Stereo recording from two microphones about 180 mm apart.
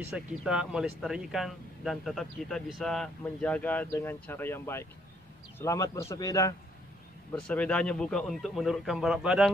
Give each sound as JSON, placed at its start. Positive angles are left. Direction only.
{"t": 0.1, "sound": "speech", "side_deg": -5}
{"t": 7.3, "sound": "speech", "side_deg": 5}